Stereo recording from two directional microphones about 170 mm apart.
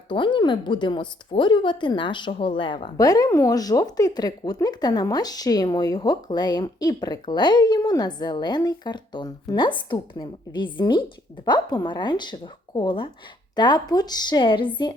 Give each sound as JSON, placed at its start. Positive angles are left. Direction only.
{"t": 0.1, "sound": "a woman's voice", "side_deg": 30}